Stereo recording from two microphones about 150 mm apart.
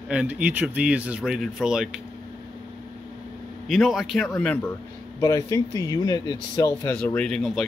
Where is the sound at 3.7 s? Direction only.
Centre (ahead or behind).